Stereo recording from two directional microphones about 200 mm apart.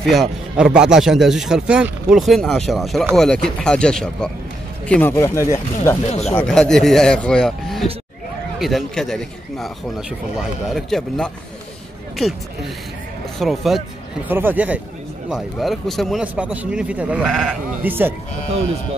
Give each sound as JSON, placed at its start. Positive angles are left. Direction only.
{"t": 0.0, "sound": "speech", "side_deg": 0}
{"t": 6.0, "sound": "speech", "side_deg": 30}
{"t": 6.3, "sound": "speech", "side_deg": 0}
{"t": 13.4, "sound": "speech", "side_deg": 0}